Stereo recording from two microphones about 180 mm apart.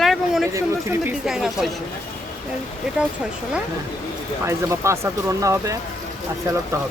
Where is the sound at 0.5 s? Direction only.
15° right (ahead or behind).